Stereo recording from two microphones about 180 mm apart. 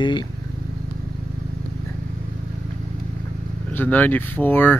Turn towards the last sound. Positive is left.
turn(degrees=10)  # may be behind; listen again after turning